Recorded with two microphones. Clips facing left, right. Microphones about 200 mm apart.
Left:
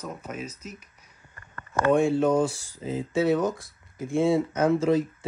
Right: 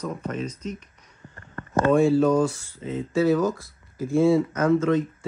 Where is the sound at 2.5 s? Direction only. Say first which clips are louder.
Even; 35° left (ahead or behind).